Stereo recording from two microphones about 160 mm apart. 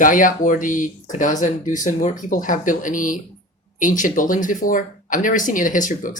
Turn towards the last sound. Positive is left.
turn(degrees=55)  # may be behind; listen again after turning